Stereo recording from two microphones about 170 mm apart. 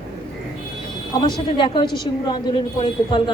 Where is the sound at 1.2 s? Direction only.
25° left (ahead or behind).